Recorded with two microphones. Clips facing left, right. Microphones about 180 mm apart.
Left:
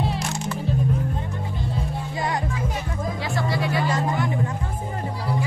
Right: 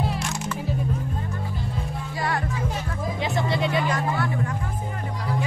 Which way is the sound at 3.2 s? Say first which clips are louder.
Right 2 dB; 20° right (ahead or behind).